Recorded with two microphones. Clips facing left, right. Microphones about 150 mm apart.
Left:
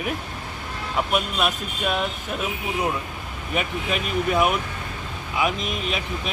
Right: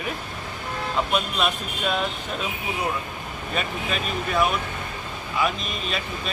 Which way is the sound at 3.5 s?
15° left (ahead or behind).